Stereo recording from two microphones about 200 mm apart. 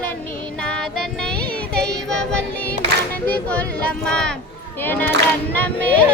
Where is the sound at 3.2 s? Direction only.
10° left (ahead or behind).